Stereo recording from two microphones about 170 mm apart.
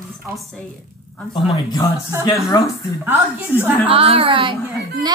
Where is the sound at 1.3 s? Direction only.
30° left (ahead or behind).